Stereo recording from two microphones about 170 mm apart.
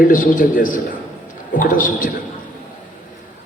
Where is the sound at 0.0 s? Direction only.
55° left (ahead or behind).